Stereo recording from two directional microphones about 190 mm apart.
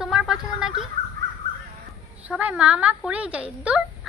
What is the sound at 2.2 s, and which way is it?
A woman's voice, 5° right (ahead or behind).